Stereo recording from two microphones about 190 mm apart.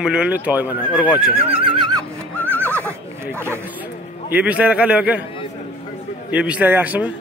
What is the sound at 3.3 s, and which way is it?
A man's voice, 15° right (ahead or behind).